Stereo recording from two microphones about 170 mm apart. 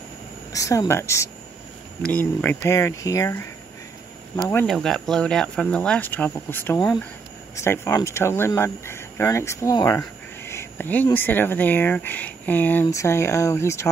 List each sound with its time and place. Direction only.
0.5 s speech: 20° left (ahead or behind)
4.6 s speech: centre (ahead or behind)